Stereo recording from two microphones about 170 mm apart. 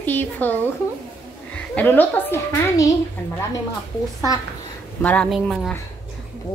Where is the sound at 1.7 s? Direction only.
10° left (ahead or behind).